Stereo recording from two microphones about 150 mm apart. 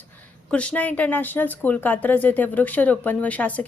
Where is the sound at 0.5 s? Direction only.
10° left (ahead or behind).